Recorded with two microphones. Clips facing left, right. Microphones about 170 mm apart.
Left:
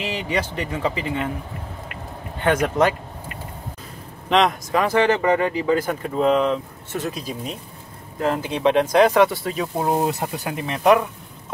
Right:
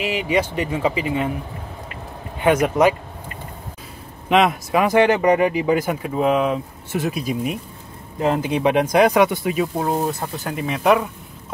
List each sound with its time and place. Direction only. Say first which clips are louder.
0.0 s speech: right 4 dB; 10° right (ahead or behind)
2.4 s speech: right 3 dB; 10° right (ahead or behind)
4.3 s speech: right 2 dB; 5° right (ahead or behind)
9.9 s speech: left 1 dB; 20° left (ahead or behind)
10.5 s speech: even; centre (ahead or behind)